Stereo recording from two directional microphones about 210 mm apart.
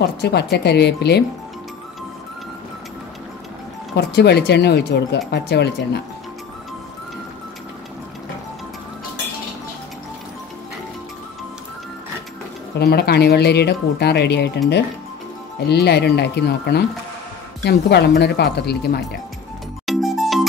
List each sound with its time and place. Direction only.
0.2 s speech: 50° left (ahead or behind)
3.9 s speech: 50° left (ahead or behind)
12.7 s speech: 50° left (ahead or behind)
15.6 s speech: 50° left (ahead or behind)
19.9 s music: centre (ahead or behind)